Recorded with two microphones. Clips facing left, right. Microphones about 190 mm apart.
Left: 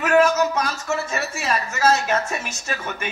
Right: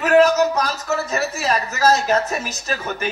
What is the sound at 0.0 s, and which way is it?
A man's voice, 35° right (ahead or behind).